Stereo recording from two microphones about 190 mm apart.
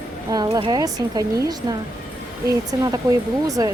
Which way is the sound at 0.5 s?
20° right (ahead or behind).